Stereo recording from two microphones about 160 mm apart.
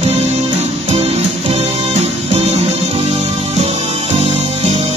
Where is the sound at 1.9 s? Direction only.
40° right (ahead or behind).